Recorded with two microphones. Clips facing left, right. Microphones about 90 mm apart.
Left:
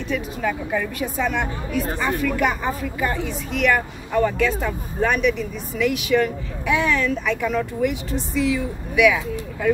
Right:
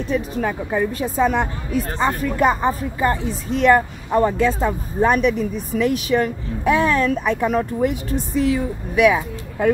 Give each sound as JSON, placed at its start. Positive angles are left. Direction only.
{"t": 0.1, "sound": "speech", "side_deg": -35}